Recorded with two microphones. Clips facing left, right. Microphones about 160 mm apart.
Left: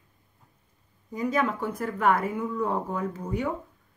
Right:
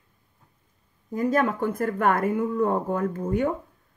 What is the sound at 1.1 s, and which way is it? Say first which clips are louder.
Speech: right 4 dB; 50° right (ahead or behind).